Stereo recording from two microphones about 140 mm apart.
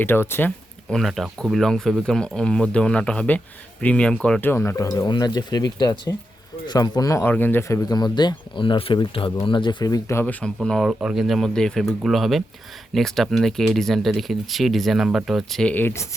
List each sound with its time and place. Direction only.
0.0 s speech: 15° left (ahead or behind)
0.9 s speech: centre (ahead or behind); by 10.3 s 20° left (ahead or behind)
10.4 s speech: 5° left (ahead or behind)